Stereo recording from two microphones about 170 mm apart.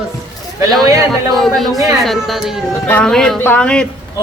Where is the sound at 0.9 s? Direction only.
20° right (ahead or behind).